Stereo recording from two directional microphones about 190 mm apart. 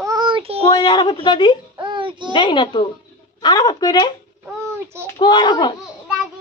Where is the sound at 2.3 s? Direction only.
25° left (ahead or behind).